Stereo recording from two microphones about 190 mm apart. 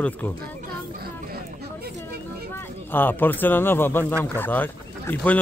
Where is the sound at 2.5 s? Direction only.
10° left (ahead or behind).